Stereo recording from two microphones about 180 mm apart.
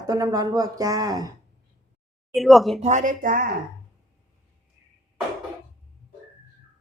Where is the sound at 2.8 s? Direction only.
40° right (ahead or behind).